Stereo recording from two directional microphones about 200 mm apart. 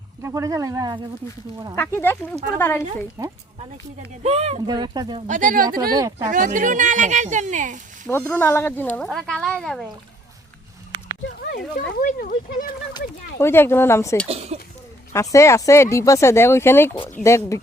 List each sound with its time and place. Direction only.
0.2 s speech: 15° right (ahead or behind)
1.7 s speech: 10° left (ahead or behind)
4.2 s speech: 30° right (ahead or behind)
4.6 s speech: 20° right (ahead or behind)
5.3 s speech: 40° right (ahead or behind)
5.9 s speech: 15° right (ahead or behind)
6.3 s speech: 40° right (ahead or behind)
8.0 s speech: 10° left (ahead or behind)
11.3 s speech: 45° left (ahead or behind)
13.4 s speech: 10° left (ahead or behind)
14.3 s speech: 30° right (ahead or behind)
15.1 s speech: 15° left (ahead or behind)